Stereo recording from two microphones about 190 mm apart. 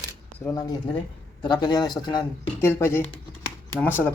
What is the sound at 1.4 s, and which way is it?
Speech, 25° left (ahead or behind).